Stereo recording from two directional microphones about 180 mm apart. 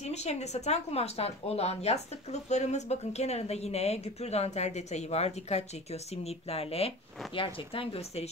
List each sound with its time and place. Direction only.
0.0 s speech: 40° left (ahead or behind)